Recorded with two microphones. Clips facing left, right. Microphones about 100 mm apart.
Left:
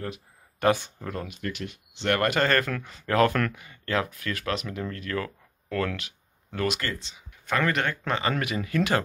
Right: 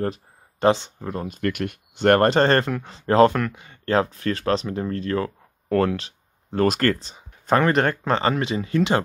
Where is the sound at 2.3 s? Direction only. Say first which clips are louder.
Right 6 dB; 30° right (ahead or behind).